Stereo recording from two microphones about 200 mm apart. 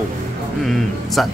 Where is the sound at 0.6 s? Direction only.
Centre (ahead or behind).